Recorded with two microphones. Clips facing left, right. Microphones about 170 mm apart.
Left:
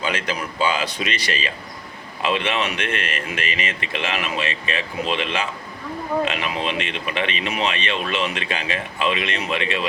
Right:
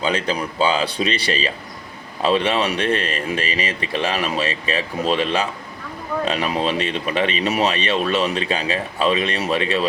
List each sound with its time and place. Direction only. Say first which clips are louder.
0.0 s speech: right 4 dB; 35° right (ahead or behind)